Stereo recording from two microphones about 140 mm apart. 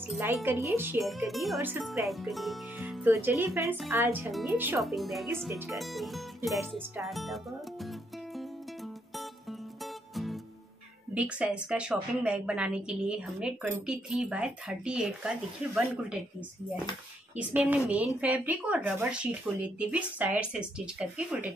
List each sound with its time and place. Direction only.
0.5 s a woman's voice: 20° right (ahead or behind)
1.0 s speech: centre (ahead or behind)
3.1 s a woman's voice: 15° right (ahead or behind)
3.6 s speech: centre (ahead or behind)
3.9 s a woman's voice: 15° right (ahead or behind)
4.3 s speech: centre (ahead or behind)
4.6 s a woman's voice: 15° right (ahead or behind)
4.8 s speech: centre (ahead or behind)
5.5 s speech: 20° right (ahead or behind)
5.8 s speech: centre (ahead or behind)
6.7 s music: centre (ahead or behind)
11.1 s a woman's voice: 10° right (ahead or behind)
17.4 s a woman's voice: 10° right (ahead or behind)